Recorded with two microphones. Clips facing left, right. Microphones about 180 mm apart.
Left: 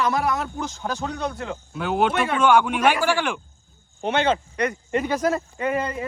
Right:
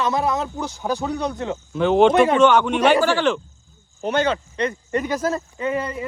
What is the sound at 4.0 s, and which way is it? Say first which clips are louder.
Speech: right 1 dB; 40° right (ahead or behind).